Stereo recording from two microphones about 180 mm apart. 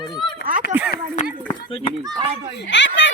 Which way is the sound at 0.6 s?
65° left (ahead or behind).